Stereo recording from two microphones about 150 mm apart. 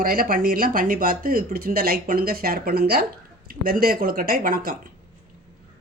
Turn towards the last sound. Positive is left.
turn(degrees=-70)  # may be behind; listen again after turning